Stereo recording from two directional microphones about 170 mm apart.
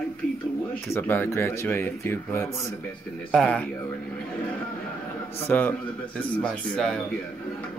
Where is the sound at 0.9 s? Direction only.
15° left (ahead or behind).